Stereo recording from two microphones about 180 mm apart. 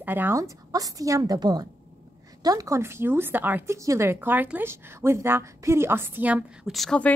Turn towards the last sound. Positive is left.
turn(degrees=5)  # may be behind; listen again after turning